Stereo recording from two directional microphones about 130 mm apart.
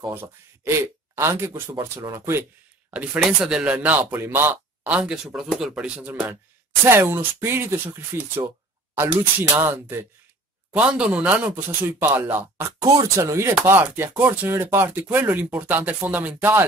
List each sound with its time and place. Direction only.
0.0 s speech: 15° right (ahead or behind)
2.9 s chopping: 10° right (ahead or behind)